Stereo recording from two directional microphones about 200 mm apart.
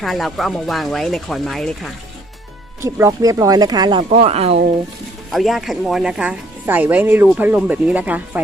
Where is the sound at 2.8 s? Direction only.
15° right (ahead or behind).